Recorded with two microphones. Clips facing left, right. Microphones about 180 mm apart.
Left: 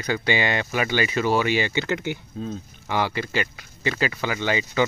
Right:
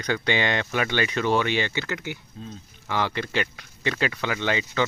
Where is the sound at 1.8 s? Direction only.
25° left (ahead or behind).